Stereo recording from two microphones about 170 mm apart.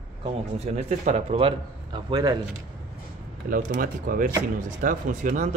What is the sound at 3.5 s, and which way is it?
A man's voice, 50° right (ahead or behind).